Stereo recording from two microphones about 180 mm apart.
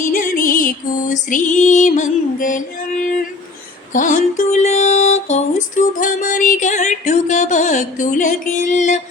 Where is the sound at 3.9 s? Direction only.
45° left (ahead or behind).